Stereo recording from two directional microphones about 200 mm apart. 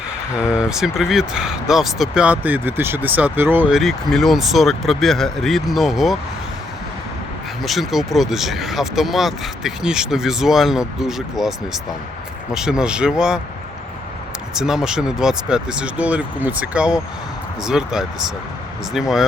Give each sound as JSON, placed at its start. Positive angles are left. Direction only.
{"t": 0.3, "sound": "speech", "side_deg": -5}
{"t": 7.6, "sound": "speech", "side_deg": 0}
{"t": 14.5, "sound": "speech", "side_deg": -5}